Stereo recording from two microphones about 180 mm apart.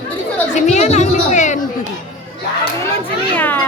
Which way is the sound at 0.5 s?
40° left (ahead or behind).